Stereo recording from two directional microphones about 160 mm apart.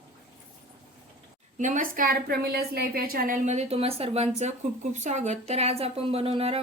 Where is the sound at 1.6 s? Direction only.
55° right (ahead or behind).